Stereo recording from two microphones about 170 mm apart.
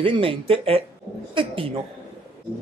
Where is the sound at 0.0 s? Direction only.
30° right (ahead or behind).